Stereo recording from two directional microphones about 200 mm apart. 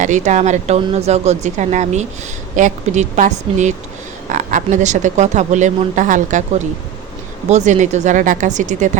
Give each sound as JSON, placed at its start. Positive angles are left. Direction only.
{"t": 0.0, "sound": "speech", "side_deg": -35}
{"t": 7.5, "sound": "speech", "side_deg": -35}